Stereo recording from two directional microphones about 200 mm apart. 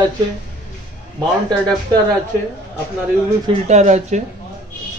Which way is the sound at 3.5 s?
35° right (ahead or behind).